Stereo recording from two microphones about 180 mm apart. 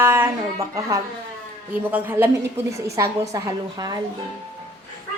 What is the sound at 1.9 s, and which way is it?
A woman's voice, 10° right (ahead or behind).